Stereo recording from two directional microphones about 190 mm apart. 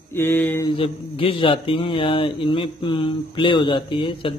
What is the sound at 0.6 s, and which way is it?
A man's voice, 30° left (ahead or behind).